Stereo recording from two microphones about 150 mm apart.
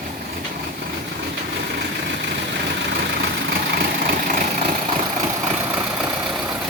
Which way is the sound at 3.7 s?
75° right (ahead or behind).